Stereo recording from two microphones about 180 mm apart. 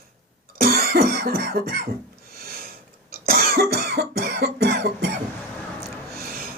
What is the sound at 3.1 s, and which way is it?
Cough, 55° right (ahead or behind).